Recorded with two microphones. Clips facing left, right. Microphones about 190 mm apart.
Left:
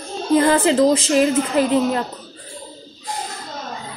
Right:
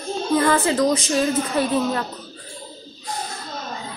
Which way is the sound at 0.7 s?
25° left (ahead or behind).